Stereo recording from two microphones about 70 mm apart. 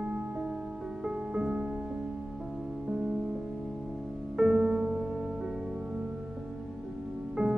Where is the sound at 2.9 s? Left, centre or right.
Centre.